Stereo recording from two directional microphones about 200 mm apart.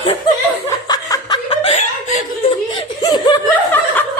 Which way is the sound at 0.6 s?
20° left (ahead or behind).